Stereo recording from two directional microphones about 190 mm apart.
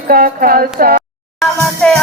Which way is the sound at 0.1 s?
50° right (ahead or behind).